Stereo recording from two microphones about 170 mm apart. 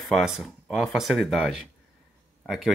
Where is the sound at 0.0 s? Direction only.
Centre (ahead or behind).